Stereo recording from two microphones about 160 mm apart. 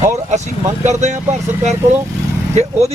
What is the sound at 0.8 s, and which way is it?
Speech, 45° right (ahead or behind).